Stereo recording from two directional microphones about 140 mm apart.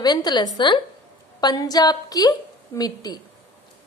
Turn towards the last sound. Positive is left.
turn(degrees=30)  # may be behind; listen again after turning